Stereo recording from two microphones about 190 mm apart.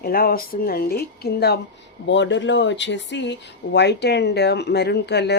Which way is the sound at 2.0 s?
70° left (ahead or behind).